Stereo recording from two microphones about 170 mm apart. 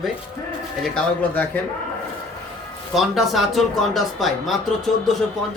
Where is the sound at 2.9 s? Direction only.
Centre (ahead or behind).